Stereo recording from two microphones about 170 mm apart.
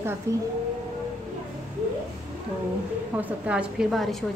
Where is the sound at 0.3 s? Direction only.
15° right (ahead or behind).